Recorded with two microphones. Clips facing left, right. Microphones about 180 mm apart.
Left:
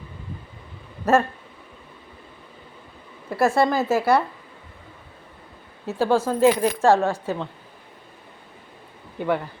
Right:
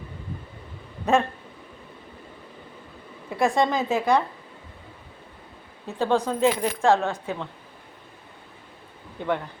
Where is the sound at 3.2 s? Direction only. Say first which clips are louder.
Left 2 dB; 5° left (ahead or behind).